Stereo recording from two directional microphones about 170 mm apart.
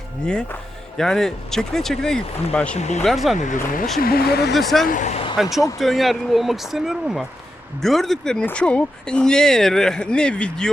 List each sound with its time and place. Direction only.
0.9 s speech: 5° left (ahead or behind)
2.7 s speech: 40° left (ahead or behind)
3.0 s speech: centre (ahead or behind)
4.0 s speech: 65° left (ahead or behind)
4.5 s speech: centre (ahead or behind)
4.9 s speech: 45° left (ahead or behind)
5.4 s speech: centre (ahead or behind)